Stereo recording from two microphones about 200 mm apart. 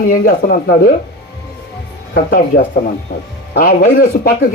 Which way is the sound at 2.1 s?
50° left (ahead or behind).